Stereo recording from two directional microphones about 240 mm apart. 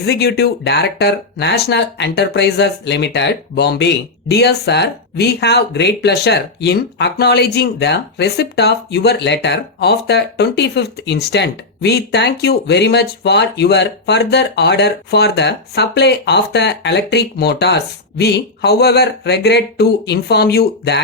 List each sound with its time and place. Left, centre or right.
0.0 s speech: left